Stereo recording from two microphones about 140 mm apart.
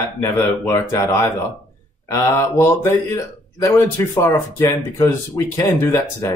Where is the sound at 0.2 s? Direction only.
20° left (ahead or behind).